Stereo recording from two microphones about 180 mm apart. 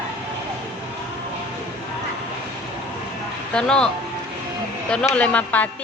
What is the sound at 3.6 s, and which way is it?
Speech, 5° left (ahead or behind).